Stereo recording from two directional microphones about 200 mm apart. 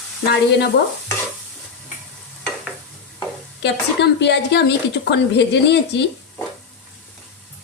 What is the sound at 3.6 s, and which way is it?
A woman's voice, 60° left (ahead or behind).